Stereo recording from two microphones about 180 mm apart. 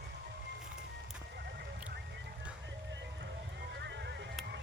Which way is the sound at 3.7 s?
75° right (ahead or behind).